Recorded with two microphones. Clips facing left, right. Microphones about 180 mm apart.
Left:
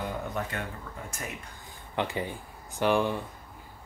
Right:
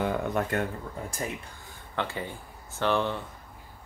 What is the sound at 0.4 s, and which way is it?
Speech, 50° right (ahead or behind).